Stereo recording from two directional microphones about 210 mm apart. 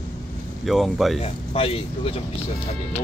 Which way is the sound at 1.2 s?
25° left (ahead or behind).